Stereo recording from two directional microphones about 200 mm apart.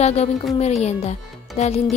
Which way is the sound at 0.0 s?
35° left (ahead or behind).